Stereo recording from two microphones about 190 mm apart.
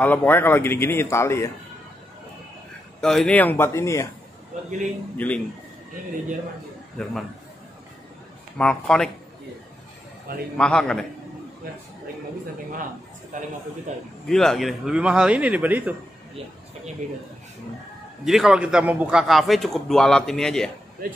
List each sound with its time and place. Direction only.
0.0 s speech: 10° left (ahead or behind)
3.0 s speech: 5° left (ahead or behind)
4.5 s a man's voice: 40° right (ahead or behind)
5.1 s speech: 10° left (ahead or behind)
8.5 s a man's voice: 5° left (ahead or behind)
10.3 s a man's voice: 50° right (ahead or behind)
10.6 s a man's voice: 5° left (ahead or behind)
13.3 s a man's voice: 45° right (ahead or behind)
14.2 s a man's voice: centre (ahead or behind)
18.2 s a man's voice: centre (ahead or behind)
21.0 s a man's voice: 50° right (ahead or behind)